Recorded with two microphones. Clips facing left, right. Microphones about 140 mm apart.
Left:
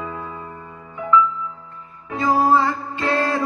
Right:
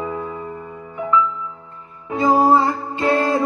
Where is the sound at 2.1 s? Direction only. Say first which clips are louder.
Right 3 dB; 25° right (ahead or behind).